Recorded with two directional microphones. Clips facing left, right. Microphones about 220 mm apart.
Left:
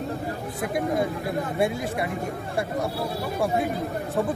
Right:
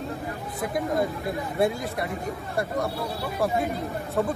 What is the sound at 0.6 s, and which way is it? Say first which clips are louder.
Speech: left 1 dB; centre (ahead or behind).